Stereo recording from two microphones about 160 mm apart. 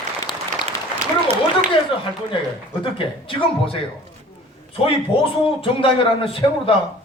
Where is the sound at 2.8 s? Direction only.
35° left (ahead or behind).